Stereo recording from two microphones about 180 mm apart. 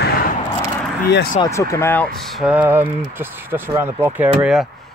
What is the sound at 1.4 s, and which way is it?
Speech, 15° left (ahead or behind).